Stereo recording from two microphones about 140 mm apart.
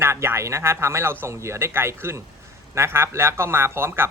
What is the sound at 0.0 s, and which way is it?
A man's voice, 20° right (ahead or behind).